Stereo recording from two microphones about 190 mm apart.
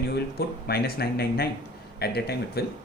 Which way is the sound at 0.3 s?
55° left (ahead or behind).